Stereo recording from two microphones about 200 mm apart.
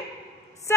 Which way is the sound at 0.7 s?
10° left (ahead or behind).